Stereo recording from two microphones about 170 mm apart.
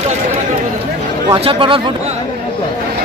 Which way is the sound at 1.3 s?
30° right (ahead or behind).